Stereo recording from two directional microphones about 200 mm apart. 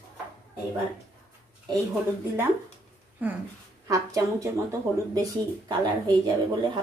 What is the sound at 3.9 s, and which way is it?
A woman's voice, 15° right (ahead or behind).